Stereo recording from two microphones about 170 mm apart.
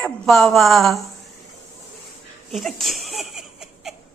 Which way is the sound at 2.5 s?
Centre (ahead or behind).